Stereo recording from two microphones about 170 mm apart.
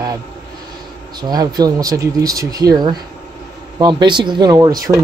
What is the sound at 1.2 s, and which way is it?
Speech, 25° right (ahead or behind).